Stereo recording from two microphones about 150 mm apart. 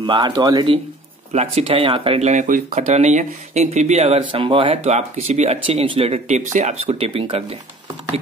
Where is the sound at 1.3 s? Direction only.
40° right (ahead or behind).